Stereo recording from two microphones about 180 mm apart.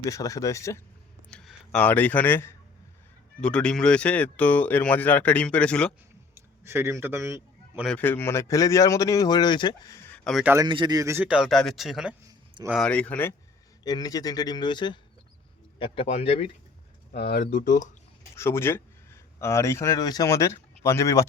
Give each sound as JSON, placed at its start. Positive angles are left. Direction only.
{"t": 0.0, "sound": "speech", "side_deg": 20}
{"t": 1.3, "sound": "speech", "side_deg": 5}
{"t": 6.3, "sound": "a man's voice", "side_deg": -15}
{"t": 7.9, "sound": "speech", "side_deg": 10}
{"t": 10.2, "sound": "a man's voice", "side_deg": 0}
{"t": 10.5, "sound": "a man's voice", "side_deg": -25}
{"t": 12.9, "sound": "speech", "side_deg": 10}
{"t": 13.8, "sound": "speech", "side_deg": 20}
{"t": 17.1, "sound": "speech", "side_deg": 60}
{"t": 18.3, "sound": "speech", "side_deg": 15}